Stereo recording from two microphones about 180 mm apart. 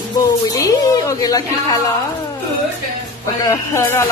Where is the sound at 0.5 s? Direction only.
20° left (ahead or behind).